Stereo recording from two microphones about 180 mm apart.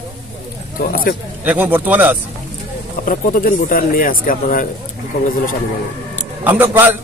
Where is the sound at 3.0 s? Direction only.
50° left (ahead or behind).